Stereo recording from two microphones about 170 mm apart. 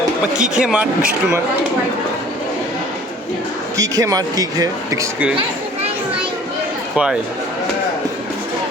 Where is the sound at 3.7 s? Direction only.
20° right (ahead or behind).